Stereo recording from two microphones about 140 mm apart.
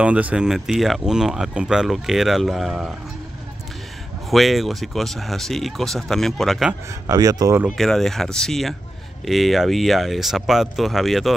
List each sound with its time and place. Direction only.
0.0 s speech: 10° right (ahead or behind)
4.3 s speech: centre (ahead or behind)
7.1 s speech: 25° right (ahead or behind)
7.7 s speech: centre (ahead or behind)